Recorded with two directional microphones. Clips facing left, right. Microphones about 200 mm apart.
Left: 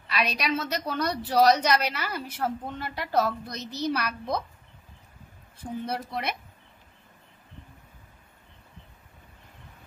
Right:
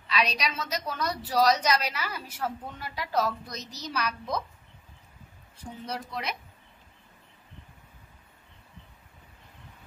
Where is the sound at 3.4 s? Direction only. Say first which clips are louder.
Left 9 dB; 60° left (ahead or behind).